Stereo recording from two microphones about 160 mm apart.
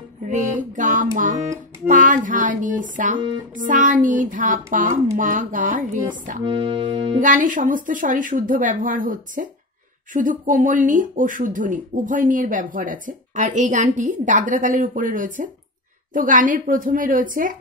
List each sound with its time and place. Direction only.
0.3 s music: 50° right (ahead or behind)
1.9 s speech: 55° right (ahead or behind)
6.4 s music: 30° right (ahead or behind)
7.2 s speech: 55° right (ahead or behind)